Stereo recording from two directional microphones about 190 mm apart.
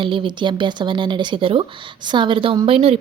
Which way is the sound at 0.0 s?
25° right (ahead or behind).